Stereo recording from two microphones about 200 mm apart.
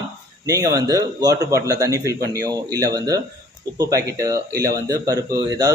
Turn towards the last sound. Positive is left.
turn(degrees=-20)  # may be behind; listen again after turning